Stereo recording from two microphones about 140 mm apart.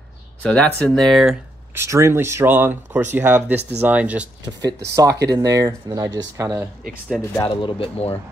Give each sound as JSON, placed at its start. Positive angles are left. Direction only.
{"t": 0.4, "sound": "speech", "side_deg": 10}
{"t": 1.7, "sound": "speech", "side_deg": -20}
{"t": 4.5, "sound": "speech", "side_deg": -30}
{"t": 7.4, "sound": "speech", "side_deg": 40}